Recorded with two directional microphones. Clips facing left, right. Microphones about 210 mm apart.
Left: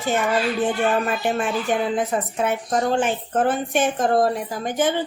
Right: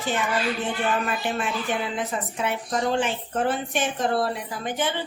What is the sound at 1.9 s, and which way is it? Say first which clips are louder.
A woman's voice: left 6 dB; 45° left (ahead or behind).